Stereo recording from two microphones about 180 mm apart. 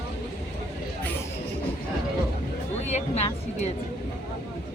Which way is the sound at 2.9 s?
40° left (ahead or behind).